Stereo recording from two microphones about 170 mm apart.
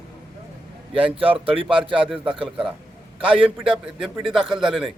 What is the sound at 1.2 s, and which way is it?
Speech, 35° right (ahead or behind).